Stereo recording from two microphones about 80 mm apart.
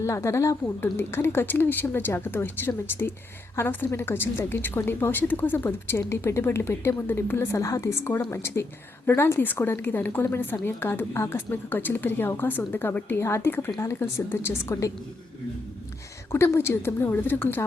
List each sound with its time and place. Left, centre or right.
0.0 s a woman's voice: left
8.3 s a woman's voice: left
16.3 s a woman's voice: left